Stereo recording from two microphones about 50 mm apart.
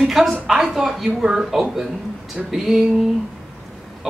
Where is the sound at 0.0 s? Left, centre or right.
Centre.